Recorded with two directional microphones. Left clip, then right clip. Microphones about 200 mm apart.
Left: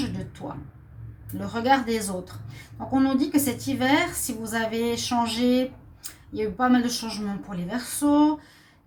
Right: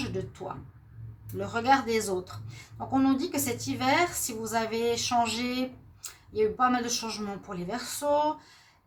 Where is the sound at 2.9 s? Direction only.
50° right (ahead or behind).